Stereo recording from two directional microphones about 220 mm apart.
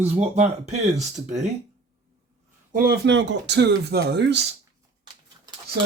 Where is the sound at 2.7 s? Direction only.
40° right (ahead or behind).